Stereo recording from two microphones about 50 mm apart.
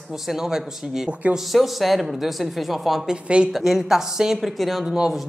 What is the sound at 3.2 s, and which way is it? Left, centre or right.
Speech, right.